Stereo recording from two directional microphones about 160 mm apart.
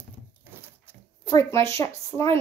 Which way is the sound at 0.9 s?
15° right (ahead or behind).